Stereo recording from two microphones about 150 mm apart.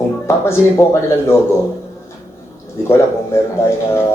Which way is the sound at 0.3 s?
20° left (ahead or behind).